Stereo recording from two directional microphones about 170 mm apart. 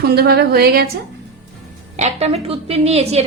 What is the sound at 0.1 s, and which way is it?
Speech, 70° right (ahead or behind).